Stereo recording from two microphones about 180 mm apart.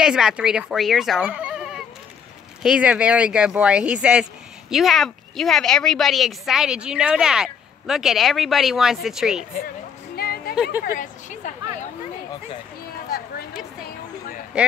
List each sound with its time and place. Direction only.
0.0 s speech: 5° right (ahead or behind)
10.1 s music: 60° left (ahead or behind)
10.5 s speech: 5° right (ahead or behind)
10.8 s speech: 50° left (ahead or behind)